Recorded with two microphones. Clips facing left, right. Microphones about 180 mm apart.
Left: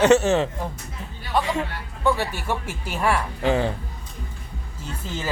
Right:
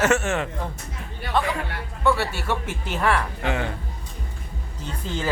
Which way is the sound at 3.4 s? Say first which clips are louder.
Left 8 dB; 30° left (ahead or behind).